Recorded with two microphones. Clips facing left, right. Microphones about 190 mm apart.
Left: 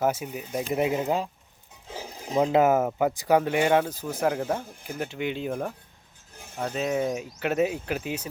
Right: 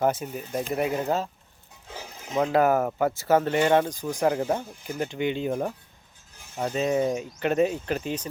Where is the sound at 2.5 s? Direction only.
20° left (ahead or behind).